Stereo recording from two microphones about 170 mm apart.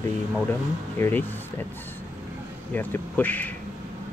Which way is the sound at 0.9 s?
10° left (ahead or behind).